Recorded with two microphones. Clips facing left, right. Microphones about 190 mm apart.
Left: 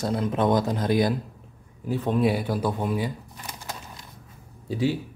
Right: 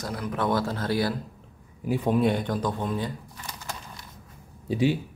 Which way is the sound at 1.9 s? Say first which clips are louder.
Right 1 dB; 10° right (ahead or behind).